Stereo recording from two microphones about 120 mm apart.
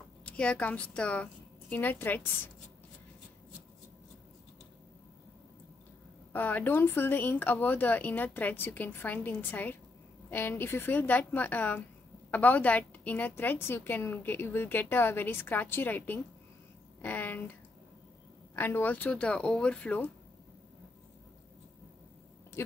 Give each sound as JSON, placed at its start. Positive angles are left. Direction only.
{"t": 0.2, "sound": "a woman's voice", "side_deg": 10}
{"t": 6.3, "sound": "a woman's voice", "side_deg": 15}
{"t": 18.5, "sound": "a woman's voice", "side_deg": 15}